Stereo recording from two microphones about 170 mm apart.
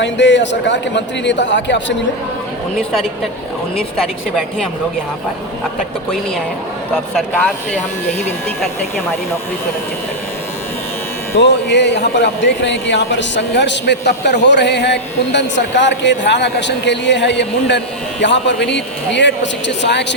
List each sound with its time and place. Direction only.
0.0 s a man's voice: 90° left
3.9 s speech: centre (ahead or behind)
7.2 s speech: 5° left (ahead or behind)
11.3 s a man's voice: 90° left